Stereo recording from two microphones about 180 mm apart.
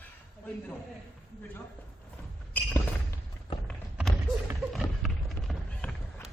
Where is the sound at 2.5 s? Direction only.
10° left (ahead or behind).